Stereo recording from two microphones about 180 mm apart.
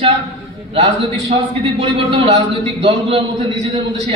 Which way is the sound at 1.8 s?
30° right (ahead or behind).